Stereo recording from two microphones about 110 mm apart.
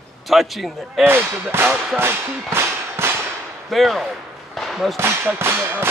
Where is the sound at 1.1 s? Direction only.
20° right (ahead or behind).